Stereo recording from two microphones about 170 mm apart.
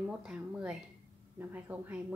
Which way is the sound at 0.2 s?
5° right (ahead or behind).